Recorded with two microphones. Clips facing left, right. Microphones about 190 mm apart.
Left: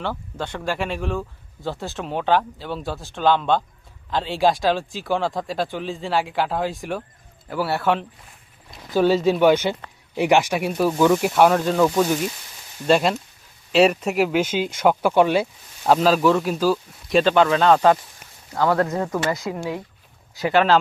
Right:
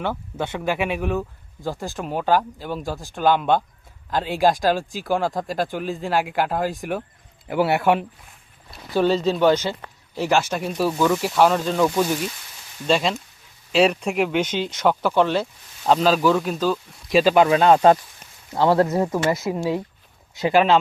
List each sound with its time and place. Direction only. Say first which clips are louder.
0.0 s speech: right 2 dB; 10° right (ahead or behind)
7.4 s speech: right 3 dB; 20° right (ahead or behind)
9.0 s speech: left 2 dB; 5° left (ahead or behind); by 17.8 s 15° right (ahead or behind)
18.5 s speech: right 2 dB; 25° right (ahead or behind)